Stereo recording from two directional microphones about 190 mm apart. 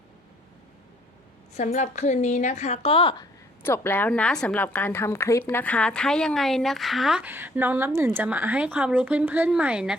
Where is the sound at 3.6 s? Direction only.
10° left (ahead or behind).